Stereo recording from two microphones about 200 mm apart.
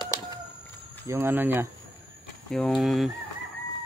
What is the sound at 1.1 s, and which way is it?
Speech, 10° right (ahead or behind).